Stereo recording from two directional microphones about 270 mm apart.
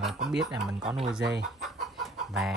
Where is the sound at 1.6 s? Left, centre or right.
Centre.